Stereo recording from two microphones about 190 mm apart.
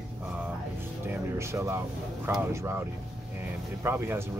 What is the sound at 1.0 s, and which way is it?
Music, 15° right (ahead or behind).